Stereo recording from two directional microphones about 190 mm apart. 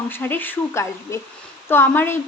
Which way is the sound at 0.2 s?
10° left (ahead or behind).